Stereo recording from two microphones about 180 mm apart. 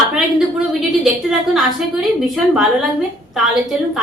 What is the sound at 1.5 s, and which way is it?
A woman's voice, centre (ahead or behind).